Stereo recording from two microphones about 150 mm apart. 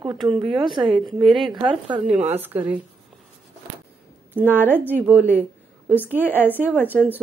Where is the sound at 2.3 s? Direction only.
10° right (ahead or behind).